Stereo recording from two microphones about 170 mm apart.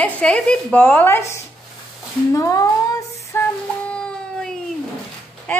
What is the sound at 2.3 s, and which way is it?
Speech, 20° left (ahead or behind).